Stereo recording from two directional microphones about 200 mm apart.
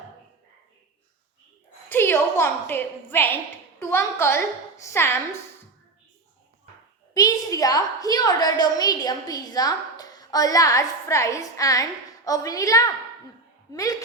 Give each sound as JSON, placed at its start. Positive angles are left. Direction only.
{"t": 1.9, "sound": "a sound", "side_deg": 10}
{"t": 3.8, "sound": "a woman's voice", "side_deg": 10}
{"t": 7.1, "sound": "a woman's voice", "side_deg": 20}